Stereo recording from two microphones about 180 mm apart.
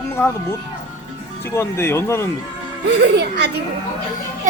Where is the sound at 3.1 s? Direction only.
65° right (ahead or behind).